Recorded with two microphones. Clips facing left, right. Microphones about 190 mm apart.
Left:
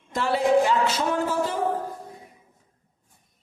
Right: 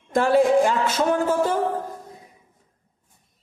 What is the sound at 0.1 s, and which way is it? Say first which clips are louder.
Speech: right 4 dB; 50° right (ahead or behind).